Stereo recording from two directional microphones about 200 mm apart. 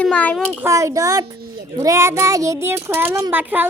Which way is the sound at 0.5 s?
15° right (ahead or behind).